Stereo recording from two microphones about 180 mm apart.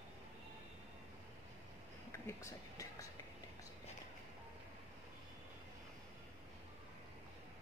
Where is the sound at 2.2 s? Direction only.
15° left (ahead or behind).